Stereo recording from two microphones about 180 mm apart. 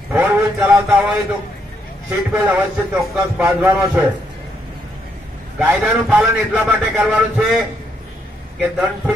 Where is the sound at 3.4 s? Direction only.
15° right (ahead or behind).